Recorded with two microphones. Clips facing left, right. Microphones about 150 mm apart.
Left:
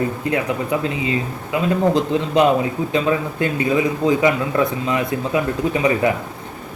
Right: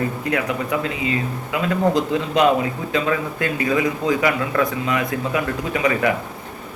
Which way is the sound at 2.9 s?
25° left (ahead or behind).